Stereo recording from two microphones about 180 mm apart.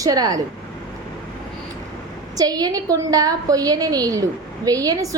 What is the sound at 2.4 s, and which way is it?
A woman's voice, 20° right (ahead or behind).